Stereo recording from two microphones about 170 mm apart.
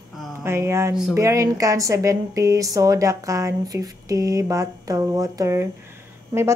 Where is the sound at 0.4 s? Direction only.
15° right (ahead or behind).